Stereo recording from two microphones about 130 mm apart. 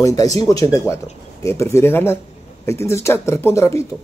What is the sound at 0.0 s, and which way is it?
A man's voice, 25° left (ahead or behind).